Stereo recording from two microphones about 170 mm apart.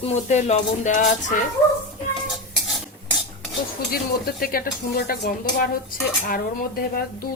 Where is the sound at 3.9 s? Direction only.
60° left (ahead or behind).